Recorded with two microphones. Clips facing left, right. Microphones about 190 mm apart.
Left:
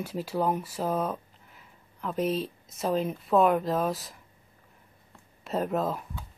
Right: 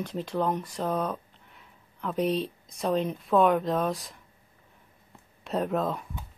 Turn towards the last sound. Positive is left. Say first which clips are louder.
# even
turn(degrees=0)  # may be behind; listen again after turning